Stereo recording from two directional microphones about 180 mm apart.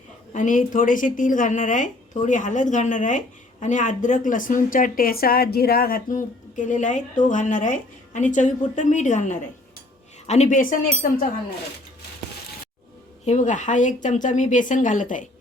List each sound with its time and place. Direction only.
0.3 s a woman's voice: 45° left (ahead or behind)
13.2 s a woman's voice: 45° left (ahead or behind)